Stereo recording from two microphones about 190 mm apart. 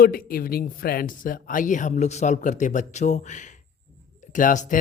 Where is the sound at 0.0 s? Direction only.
50° left (ahead or behind).